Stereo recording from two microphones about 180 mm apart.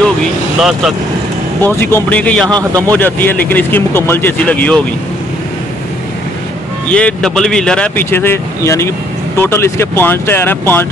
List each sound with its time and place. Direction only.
0.6 s speech: centre (ahead or behind)
1.6 s speech: 10° left (ahead or behind)
2.4 s speech: 20° right (ahead or behind)
3.0 s speech: 10° left (ahead or behind)
6.9 s speech: 5° left (ahead or behind)